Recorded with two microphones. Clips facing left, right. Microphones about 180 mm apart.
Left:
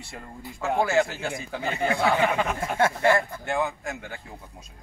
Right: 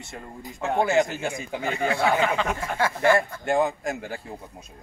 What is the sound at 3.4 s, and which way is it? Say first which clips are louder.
Speech: right 5 dB; 35° right (ahead or behind).